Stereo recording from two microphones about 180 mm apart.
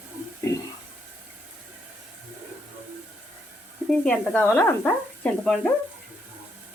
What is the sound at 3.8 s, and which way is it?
Speech, 5° left (ahead or behind).